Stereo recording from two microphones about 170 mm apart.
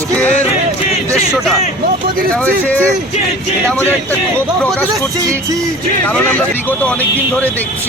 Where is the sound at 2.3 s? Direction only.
10° left (ahead or behind).